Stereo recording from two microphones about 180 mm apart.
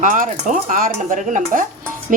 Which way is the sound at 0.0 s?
45° right (ahead or behind).